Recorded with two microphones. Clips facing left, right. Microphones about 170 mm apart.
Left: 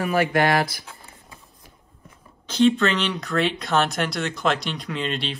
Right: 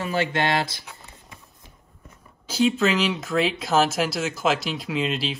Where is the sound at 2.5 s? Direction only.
5° right (ahead or behind).